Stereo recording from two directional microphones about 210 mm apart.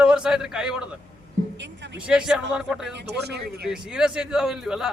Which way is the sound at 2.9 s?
50° right (ahead or behind).